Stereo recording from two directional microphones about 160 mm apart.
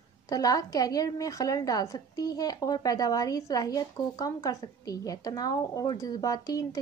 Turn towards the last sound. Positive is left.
turn(degrees=20)  # may be behind; listen again after turning